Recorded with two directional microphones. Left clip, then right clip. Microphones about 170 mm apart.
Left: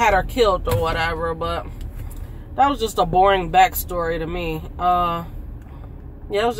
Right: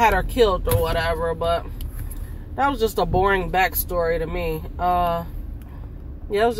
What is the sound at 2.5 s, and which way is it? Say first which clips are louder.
Speech: left 3 dB; 5° left (ahead or behind).